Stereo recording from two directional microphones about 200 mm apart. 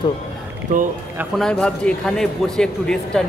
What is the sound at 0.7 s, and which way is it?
Speech, 40° right (ahead or behind).